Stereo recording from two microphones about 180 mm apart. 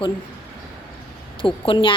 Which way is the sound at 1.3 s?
30° left (ahead or behind).